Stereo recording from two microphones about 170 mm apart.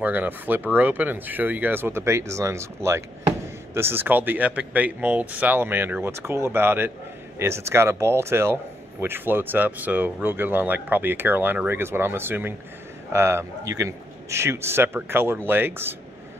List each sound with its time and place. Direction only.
0.0 s speech: 10° right (ahead or behind)